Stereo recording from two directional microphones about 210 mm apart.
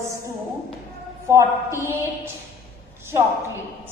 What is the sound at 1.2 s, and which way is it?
A woman's voice, 10° right (ahead or behind).